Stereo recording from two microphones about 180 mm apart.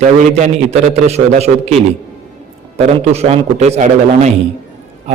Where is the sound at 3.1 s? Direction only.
35° right (ahead or behind).